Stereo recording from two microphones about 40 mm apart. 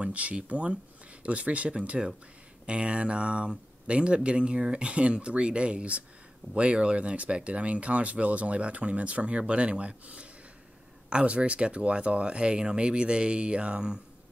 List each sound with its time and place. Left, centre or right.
0.0 s speech: right